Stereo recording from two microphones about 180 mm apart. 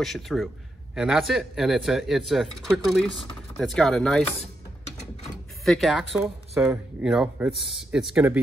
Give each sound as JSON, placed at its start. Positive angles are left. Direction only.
{"t": 0.0, "sound": "speech", "side_deg": 0}
{"t": 5.7, "sound": "speech", "side_deg": 0}